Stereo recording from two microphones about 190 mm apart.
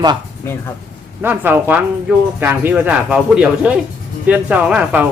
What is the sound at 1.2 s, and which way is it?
Speech, 10° right (ahead or behind).